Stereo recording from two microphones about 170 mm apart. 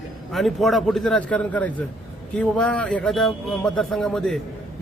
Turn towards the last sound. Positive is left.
turn(degrees=5)  # may be behind; listen again after turning